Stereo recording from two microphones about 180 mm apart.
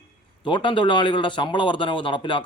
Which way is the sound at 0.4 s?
25° left (ahead or behind).